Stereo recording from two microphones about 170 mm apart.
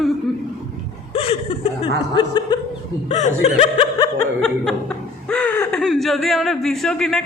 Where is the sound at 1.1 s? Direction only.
35° left (ahead or behind).